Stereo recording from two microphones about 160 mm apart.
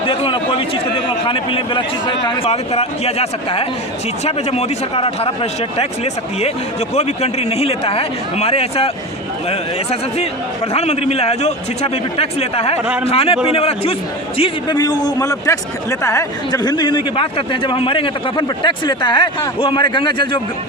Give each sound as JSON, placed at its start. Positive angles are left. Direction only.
{"t": 0.0, "sound": "a man's voice", "side_deg": 35}
{"t": 6.9, "sound": "a man's voice", "side_deg": 40}
{"t": 14.8, "sound": "a man's voice", "side_deg": 25}